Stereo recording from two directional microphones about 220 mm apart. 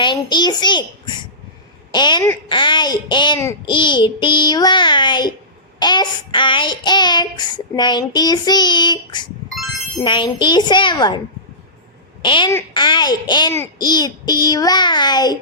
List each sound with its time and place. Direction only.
0.0 s a child's voice: 20° left (ahead or behind)
1.9 s child singing: 20° left (ahead or behind)
12.2 s child singing: 20° left (ahead or behind)